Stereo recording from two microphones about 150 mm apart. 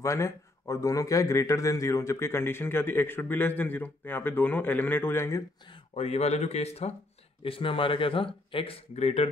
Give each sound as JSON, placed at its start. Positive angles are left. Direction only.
{"t": 0.0, "sound": "a man's voice", "side_deg": 20}
{"t": 5.7, "sound": "speech", "side_deg": 45}